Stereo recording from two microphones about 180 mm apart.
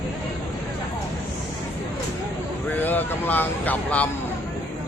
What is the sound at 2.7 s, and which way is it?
Speech, 10° left (ahead or behind).